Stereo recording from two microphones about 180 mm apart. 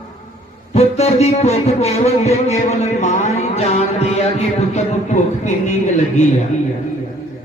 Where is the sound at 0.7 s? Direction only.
35° left (ahead or behind).